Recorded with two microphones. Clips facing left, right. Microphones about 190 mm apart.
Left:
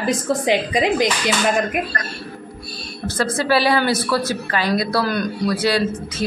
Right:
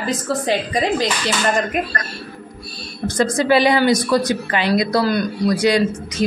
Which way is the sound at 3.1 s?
15° right (ahead or behind).